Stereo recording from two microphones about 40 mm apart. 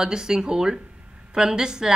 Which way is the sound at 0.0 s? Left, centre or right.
Centre.